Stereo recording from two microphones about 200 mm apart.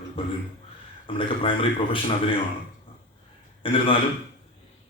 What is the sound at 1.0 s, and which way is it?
Speech, 25° left (ahead or behind).